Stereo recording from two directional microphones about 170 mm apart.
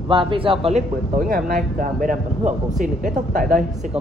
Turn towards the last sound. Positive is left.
turn(degrees=-50)  # may be behind; listen again after turning